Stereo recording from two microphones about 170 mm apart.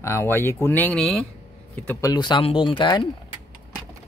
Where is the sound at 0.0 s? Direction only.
15° left (ahead or behind).